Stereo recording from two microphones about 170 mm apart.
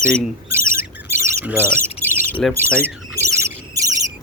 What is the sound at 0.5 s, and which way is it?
Bird, 15° right (ahead or behind).